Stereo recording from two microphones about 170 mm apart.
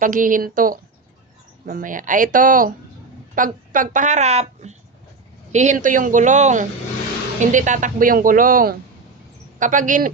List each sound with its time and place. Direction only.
0.0 s a woman's voice: 50° right (ahead or behind)